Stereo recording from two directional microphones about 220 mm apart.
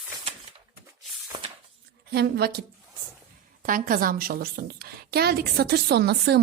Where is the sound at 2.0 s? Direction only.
45° right (ahead or behind).